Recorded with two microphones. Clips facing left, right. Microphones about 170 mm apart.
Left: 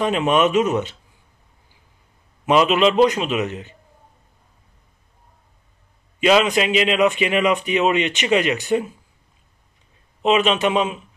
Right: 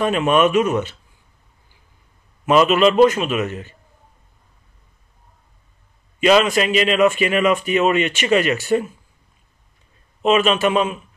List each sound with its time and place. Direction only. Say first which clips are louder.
0.0 s speech: right 1 dB; 20° left (ahead or behind)
2.4 s a man's voice: right 2 dB; 15° left (ahead or behind)
6.2 s a man's voice: right 1 dB; 15° left (ahead or behind)
10.2 s speech: right 1 dB; 20° left (ahead or behind)